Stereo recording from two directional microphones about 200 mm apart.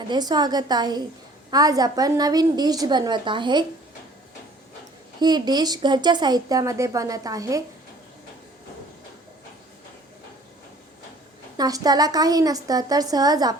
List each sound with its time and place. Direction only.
0.1 s speech: 20° right (ahead or behind)
5.2 s speech: 20° right (ahead or behind)
11.5 s speech: 20° right (ahead or behind)